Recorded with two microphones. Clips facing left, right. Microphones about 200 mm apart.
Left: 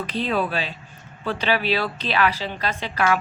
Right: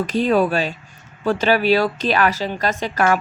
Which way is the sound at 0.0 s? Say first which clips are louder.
Right 7 dB; 45° right (ahead or behind).